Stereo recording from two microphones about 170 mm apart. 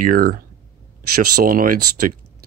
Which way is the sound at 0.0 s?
55° right (ahead or behind).